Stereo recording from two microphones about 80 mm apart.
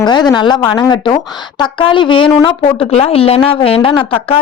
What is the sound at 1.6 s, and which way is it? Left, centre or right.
Speech, left.